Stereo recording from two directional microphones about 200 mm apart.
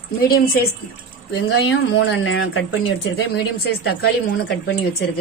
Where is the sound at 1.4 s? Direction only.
70° left (ahead or behind); by 2.8 s 90° left.